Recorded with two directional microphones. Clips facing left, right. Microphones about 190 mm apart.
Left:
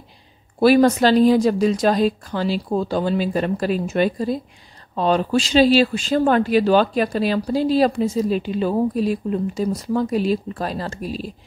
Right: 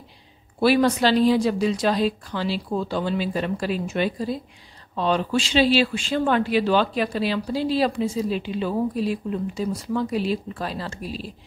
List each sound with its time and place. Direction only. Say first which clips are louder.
0.6 s speech: left 5 dB; 45° left (ahead or behind)